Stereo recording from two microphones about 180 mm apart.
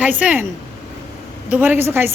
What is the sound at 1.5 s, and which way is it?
Speech, 10° right (ahead or behind).